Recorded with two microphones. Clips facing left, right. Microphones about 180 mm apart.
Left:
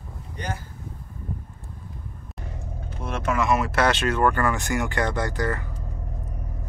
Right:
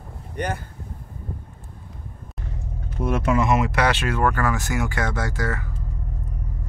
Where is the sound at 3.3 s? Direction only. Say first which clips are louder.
Right 1 dB; 25° right (ahead or behind).